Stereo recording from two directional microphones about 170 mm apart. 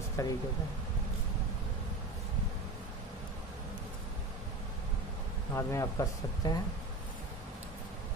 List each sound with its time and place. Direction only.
0.2 s speech: 20° left (ahead or behind)
5.5 s speech: 15° left (ahead or behind)